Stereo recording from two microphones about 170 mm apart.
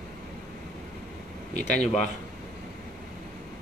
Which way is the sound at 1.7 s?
45° left (ahead or behind).